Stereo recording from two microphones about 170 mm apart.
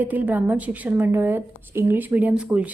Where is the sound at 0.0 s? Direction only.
10° right (ahead or behind).